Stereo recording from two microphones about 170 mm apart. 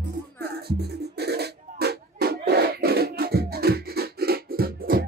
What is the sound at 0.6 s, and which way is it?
Music, 70° right (ahead or behind).